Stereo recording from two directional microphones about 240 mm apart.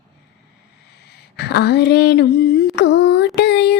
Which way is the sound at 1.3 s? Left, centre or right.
Left.